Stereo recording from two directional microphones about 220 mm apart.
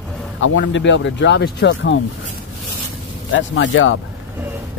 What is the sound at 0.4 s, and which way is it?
Speech, 60° left (ahead or behind).